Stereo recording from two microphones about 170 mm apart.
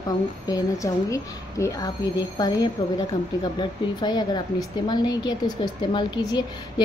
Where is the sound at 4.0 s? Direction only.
25° left (ahead or behind).